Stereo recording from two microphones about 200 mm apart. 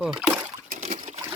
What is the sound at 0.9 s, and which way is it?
Liquid, 35° right (ahead or behind).